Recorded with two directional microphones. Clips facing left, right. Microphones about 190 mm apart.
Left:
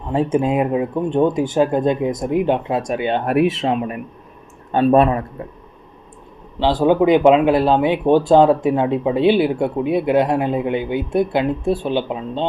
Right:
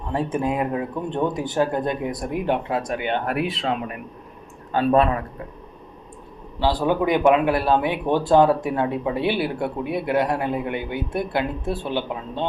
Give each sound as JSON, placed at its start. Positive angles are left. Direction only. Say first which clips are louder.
{"t": 0.1, "sound": "speech", "louder": "left 6 dB", "side_deg": 20}
{"t": 6.6, "sound": "speech", "louder": "left 6 dB", "side_deg": 20}